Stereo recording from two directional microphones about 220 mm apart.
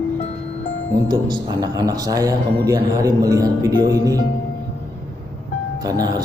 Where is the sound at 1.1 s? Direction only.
20° right (ahead or behind).